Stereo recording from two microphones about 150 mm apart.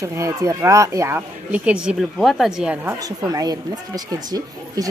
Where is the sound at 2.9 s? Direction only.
25° right (ahead or behind).